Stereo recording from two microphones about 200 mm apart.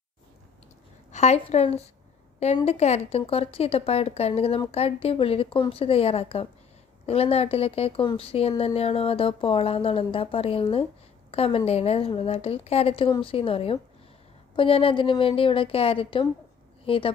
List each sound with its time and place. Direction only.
1.1 s a woman's voice: 35° left (ahead or behind)